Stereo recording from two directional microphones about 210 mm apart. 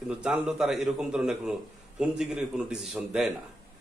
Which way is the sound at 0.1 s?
5° right (ahead or behind).